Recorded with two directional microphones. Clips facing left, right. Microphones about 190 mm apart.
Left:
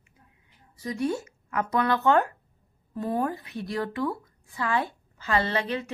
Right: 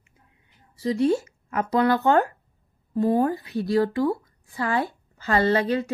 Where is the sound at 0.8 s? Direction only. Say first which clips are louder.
Right 7 dB; 25° right (ahead or behind).